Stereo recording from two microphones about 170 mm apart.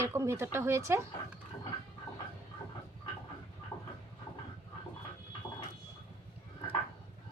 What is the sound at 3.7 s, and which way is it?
Train, 15° left (ahead or behind).